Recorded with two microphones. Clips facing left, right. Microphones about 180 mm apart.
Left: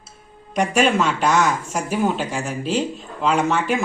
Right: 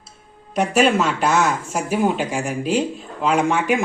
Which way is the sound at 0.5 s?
Centre (ahead or behind).